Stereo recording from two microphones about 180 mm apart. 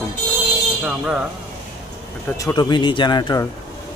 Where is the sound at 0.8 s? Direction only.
5° right (ahead or behind).